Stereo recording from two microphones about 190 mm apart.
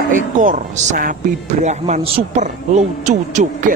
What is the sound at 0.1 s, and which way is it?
Speech, 40° right (ahead or behind).